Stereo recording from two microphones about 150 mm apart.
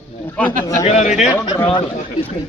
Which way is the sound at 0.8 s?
50° left (ahead or behind).